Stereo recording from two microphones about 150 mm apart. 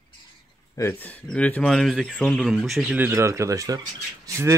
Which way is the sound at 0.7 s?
15° left (ahead or behind).